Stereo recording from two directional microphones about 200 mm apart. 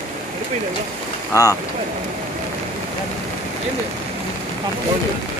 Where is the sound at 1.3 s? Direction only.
15° left (ahead or behind).